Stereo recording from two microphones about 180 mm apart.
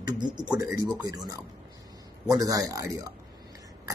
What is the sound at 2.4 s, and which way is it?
Speech, 20° right (ahead or behind).